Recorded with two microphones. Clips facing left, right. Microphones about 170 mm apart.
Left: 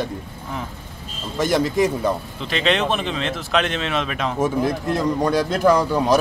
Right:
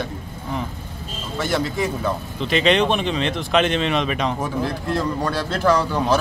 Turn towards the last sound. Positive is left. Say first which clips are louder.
# left 2 dB
turn(degrees=15)  # may be behind; listen again after turning